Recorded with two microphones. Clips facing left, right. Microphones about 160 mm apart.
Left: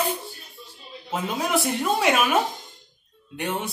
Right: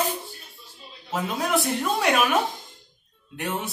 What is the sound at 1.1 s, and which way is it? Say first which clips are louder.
A man's voice: even; centre (ahead or behind).